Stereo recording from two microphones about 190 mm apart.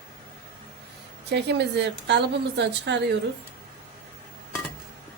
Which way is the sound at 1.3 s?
60° right (ahead or behind).